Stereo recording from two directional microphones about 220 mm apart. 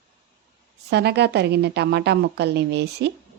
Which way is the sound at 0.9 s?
50° right (ahead or behind).